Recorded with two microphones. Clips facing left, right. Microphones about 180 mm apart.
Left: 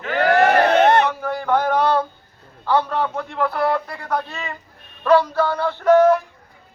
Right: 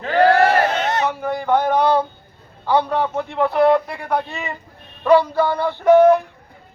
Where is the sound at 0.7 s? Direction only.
55° left (ahead or behind).